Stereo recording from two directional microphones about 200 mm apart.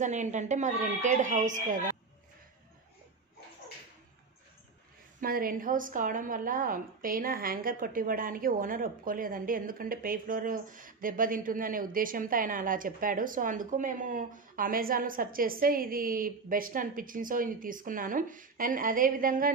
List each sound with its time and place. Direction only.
0.0 s a woman's voice: 35° right (ahead or behind)
5.2 s a woman's voice: 45° right (ahead or behind)